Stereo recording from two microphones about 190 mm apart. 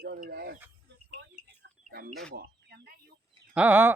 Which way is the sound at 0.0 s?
55° right (ahead or behind).